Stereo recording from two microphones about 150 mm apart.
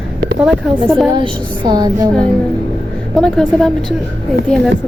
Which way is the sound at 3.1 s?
5° left (ahead or behind).